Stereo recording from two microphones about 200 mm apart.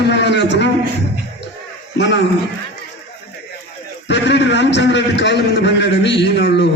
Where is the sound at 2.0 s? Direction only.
65° left (ahead or behind).